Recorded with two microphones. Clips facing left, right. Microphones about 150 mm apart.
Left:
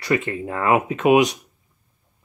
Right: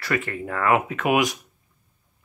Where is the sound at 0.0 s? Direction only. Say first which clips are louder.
Left 4 dB; 20° left (ahead or behind).